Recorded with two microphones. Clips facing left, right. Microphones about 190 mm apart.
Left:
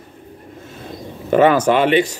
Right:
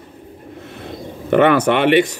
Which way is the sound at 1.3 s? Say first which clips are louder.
Even; 65° right (ahead or behind).